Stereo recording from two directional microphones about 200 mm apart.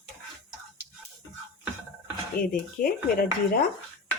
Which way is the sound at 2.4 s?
45° left (ahead or behind).